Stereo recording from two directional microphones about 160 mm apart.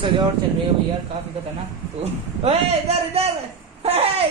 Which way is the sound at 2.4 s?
40° right (ahead or behind).